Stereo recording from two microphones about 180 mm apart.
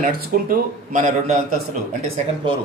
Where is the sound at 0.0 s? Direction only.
45° right (ahead or behind).